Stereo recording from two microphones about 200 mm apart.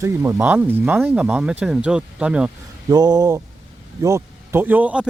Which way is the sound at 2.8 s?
20° right (ahead or behind).